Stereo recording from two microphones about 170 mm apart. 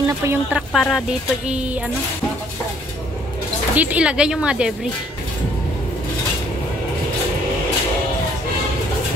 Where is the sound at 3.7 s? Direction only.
10° right (ahead or behind).